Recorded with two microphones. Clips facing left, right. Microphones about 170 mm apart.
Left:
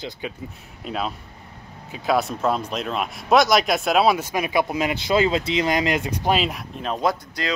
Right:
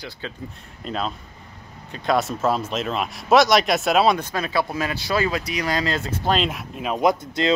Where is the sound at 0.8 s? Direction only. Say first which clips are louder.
Even; 5° left (ahead or behind).